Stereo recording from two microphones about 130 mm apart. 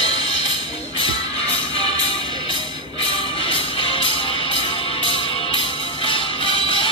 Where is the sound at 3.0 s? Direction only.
45° left (ahead or behind).